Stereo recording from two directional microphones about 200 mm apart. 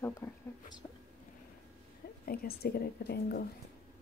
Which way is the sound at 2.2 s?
50° left (ahead or behind).